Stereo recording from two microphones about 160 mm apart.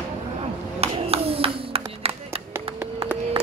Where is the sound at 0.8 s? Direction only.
40° right (ahead or behind).